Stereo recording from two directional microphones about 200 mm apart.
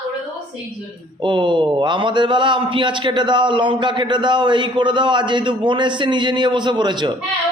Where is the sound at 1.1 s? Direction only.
25° right (ahead or behind).